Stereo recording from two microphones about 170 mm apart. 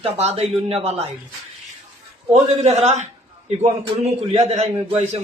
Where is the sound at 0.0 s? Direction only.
35° right (ahead or behind).